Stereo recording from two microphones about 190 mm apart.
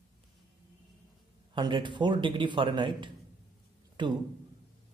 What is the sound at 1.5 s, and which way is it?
A man's voice, 25° right (ahead or behind).